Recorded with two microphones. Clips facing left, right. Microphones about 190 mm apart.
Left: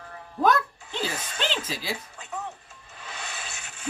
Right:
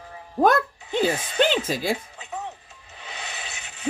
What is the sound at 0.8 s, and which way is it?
Music, 25° right (ahead or behind).